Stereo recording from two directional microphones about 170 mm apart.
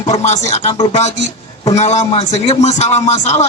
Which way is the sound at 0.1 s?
40° left (ahead or behind).